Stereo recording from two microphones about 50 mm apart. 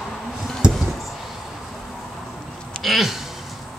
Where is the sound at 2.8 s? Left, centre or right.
Centre.